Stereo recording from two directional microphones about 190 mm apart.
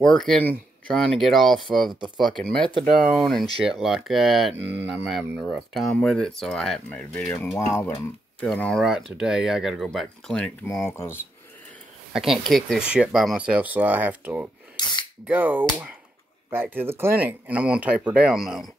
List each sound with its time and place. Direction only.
0.1 s speech: 5° left (ahead or behind)
12.1 s speech: centre (ahead or behind)
14.8 s speech: 25° left (ahead or behind)
15.2 s speech: 10° right (ahead or behind)